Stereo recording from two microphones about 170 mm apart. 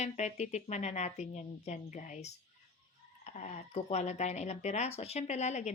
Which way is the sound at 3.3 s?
45° left (ahead or behind).